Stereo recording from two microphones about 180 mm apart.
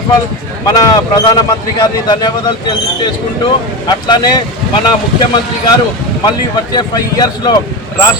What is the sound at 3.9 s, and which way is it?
Speech, 25° left (ahead or behind).